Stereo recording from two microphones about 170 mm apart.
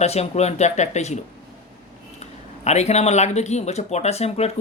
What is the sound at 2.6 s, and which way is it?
Speech, 40° left (ahead or behind).